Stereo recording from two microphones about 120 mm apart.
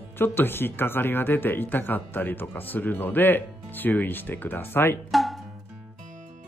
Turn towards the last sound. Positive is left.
turn(degrees=0)  # may be behind; listen again after turning